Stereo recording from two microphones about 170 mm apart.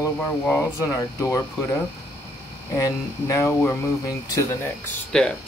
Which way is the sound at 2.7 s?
20° left (ahead or behind).